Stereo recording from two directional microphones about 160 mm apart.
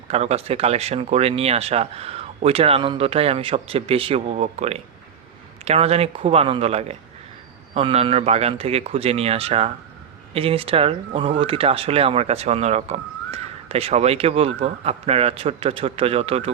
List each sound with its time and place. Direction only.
0.1 s speech: 40° right (ahead or behind)